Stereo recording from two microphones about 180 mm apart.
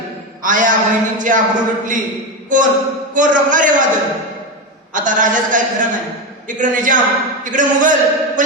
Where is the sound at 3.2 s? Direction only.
45° right (ahead or behind).